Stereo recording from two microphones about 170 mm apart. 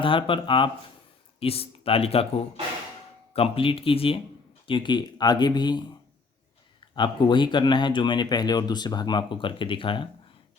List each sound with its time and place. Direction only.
0.0 s speech: 30° left (ahead or behind)
3.3 s speech: 35° left (ahead or behind)
6.9 s speech: 25° left (ahead or behind)